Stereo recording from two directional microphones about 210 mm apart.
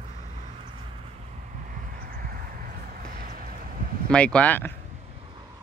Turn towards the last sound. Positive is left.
turn(degrees=10)  # may be behind; listen again after turning